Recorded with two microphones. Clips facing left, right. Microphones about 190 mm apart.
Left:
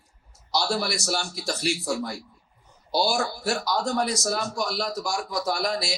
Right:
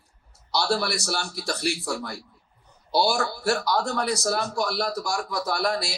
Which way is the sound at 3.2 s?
60° right (ahead or behind).